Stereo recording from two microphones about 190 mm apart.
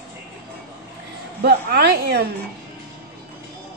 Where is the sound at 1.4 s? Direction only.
60° right (ahead or behind).